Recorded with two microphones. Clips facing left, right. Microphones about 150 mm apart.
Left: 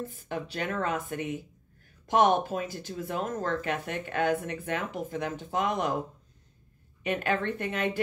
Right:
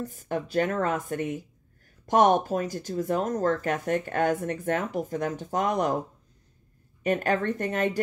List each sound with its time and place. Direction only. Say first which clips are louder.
0.0 s speech: right 4 dB; 45° right (ahead or behind)
7.0 s speech: right 4 dB; 40° right (ahead or behind)